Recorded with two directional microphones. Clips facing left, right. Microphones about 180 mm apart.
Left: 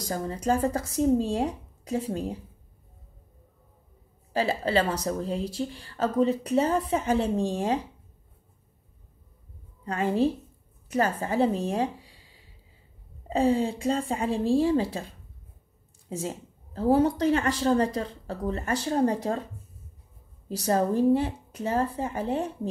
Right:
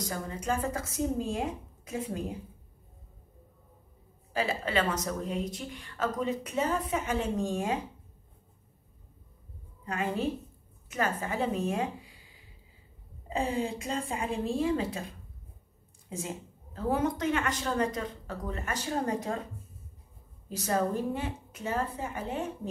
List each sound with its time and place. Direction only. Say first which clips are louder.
0.0 s a woman's voice: left 5 dB; 35° left (ahead or behind)
4.3 s a woman's voice: left 5 dB; 35° left (ahead or behind)
9.8 s a woman's voice: left 6 dB; 35° left (ahead or behind)
13.3 s a woman's voice: left 7 dB; 35° left (ahead or behind)
16.2 s a woman's voice: left 4 dB; 30° left (ahead or behind)
20.4 s a woman's voice: left 4 dB; 35° left (ahead or behind)